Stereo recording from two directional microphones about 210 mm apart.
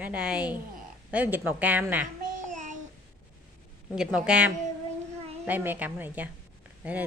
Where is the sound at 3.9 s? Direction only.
5° right (ahead or behind).